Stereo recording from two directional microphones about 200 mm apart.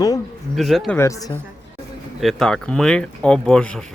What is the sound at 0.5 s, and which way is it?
Speech, centre (ahead or behind).